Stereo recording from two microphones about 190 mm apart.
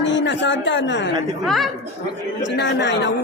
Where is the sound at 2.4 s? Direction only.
70° left (ahead or behind).